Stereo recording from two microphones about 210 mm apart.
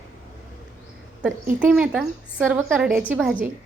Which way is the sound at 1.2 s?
5° right (ahead or behind).